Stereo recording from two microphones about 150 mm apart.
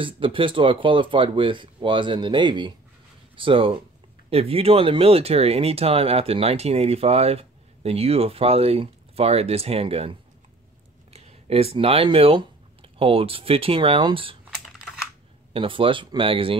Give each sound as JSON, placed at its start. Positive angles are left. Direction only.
{"t": 0.0, "sound": "speech", "side_deg": -35}
{"t": 11.1, "sound": "speech", "side_deg": -45}
{"t": 14.5, "sound": "computer keyboard", "side_deg": 0}
{"t": 15.5, "sound": "speech", "side_deg": -35}